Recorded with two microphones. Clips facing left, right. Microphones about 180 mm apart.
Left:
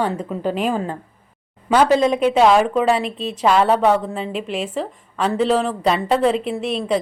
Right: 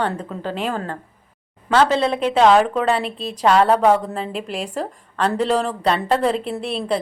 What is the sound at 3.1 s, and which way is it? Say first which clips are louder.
Speech: left 2 dB; 35° right (ahead or behind).